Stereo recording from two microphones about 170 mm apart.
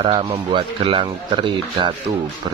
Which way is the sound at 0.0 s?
35° right (ahead or behind).